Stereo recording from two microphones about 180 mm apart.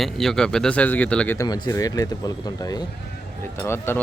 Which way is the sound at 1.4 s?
20° left (ahead or behind).